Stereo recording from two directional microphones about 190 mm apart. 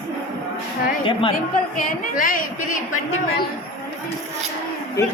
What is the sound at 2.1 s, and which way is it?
Speech, 45° left (ahead or behind).